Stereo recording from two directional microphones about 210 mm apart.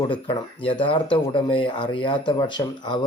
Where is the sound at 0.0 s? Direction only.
20° left (ahead or behind).